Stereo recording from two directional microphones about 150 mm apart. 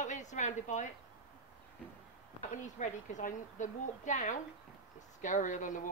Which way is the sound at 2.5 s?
55° left (ahead or behind).